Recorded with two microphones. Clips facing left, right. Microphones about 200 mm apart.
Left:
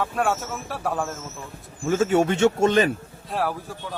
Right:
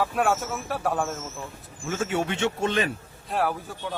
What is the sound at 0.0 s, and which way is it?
Speech, centre (ahead or behind).